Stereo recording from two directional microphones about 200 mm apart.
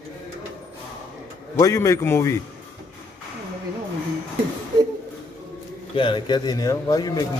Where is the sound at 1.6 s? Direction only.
15° left (ahead or behind).